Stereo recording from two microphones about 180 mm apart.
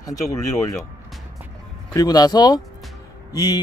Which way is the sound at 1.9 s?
20° left (ahead or behind).